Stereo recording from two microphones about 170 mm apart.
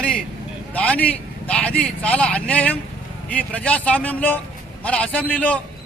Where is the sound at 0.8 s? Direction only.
5° left (ahead or behind).